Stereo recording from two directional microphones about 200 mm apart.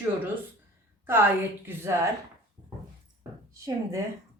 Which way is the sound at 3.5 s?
15° right (ahead or behind).